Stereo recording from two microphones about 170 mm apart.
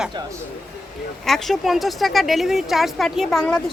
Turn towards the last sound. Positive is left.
turn(degrees=0)  # may be behind; listen again after turning